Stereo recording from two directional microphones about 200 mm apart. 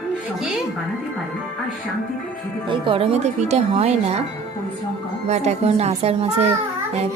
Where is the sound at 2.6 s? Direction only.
25° right (ahead or behind).